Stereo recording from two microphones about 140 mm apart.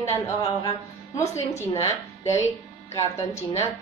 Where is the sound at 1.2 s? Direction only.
50° left (ahead or behind).